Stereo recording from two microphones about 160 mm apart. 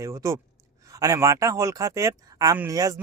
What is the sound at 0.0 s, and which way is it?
Speech, 20° right (ahead or behind).